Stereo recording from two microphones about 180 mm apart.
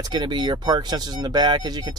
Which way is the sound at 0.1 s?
25° right (ahead or behind).